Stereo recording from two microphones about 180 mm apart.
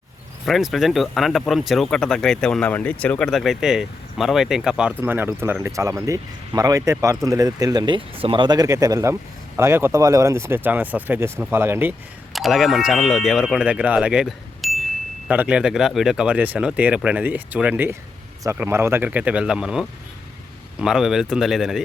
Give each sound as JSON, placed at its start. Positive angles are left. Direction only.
{"t": 0.4, "sound": "speech", "side_deg": 0}
{"t": 12.3, "sound": "speech", "side_deg": 0}